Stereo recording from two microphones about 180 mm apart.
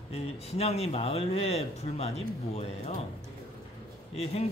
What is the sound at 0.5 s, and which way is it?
Speech, 35° left (ahead or behind).